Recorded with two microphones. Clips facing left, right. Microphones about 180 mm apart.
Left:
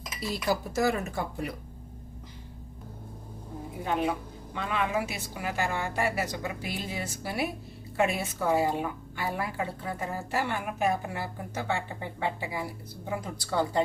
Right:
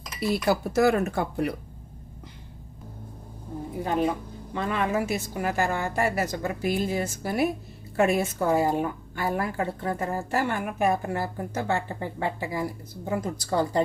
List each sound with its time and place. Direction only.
0.2 s speech: 60° right (ahead or behind)
3.8 s a woman's voice: 40° right (ahead or behind)